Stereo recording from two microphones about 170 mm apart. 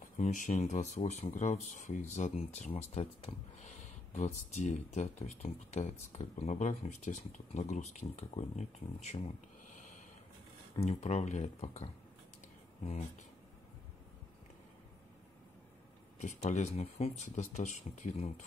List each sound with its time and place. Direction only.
0.2 s speech: 50° left (ahead or behind)
10.8 s speech: 40° left (ahead or behind)
16.2 s speech: 45° left (ahead or behind)